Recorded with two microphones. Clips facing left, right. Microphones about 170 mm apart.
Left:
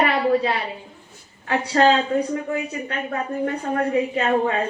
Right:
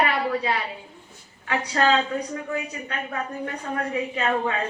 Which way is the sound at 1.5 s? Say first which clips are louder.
Left 4 dB; 30° left (ahead or behind).